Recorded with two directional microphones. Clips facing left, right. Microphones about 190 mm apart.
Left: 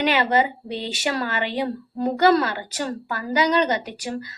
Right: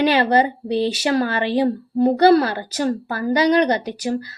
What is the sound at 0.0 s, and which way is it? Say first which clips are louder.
Speech: right 4 dB; 35° right (ahead or behind).